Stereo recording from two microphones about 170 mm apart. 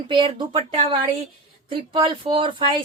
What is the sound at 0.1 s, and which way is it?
Speech, 30° right (ahead or behind).